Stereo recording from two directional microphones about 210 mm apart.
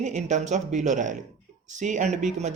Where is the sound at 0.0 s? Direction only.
35° right (ahead or behind).